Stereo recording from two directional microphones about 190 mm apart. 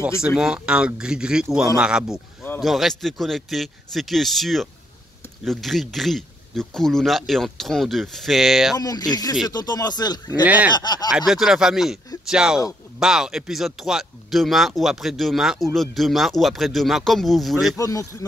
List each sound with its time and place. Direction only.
0.2 s speech: 5° right (ahead or behind)
8.7 s speech: 20° left (ahead or behind)
10.4 s speech: 10° right (ahead or behind)
10.7 s speech: 20° left (ahead or behind)
11.1 s speech: centre (ahead or behind)
17.7 s speech: 15° left (ahead or behind)